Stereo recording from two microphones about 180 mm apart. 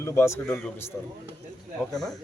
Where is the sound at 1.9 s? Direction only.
Centre (ahead or behind).